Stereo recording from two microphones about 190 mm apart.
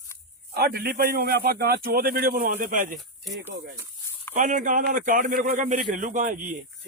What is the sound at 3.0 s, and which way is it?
Speech, centre (ahead or behind).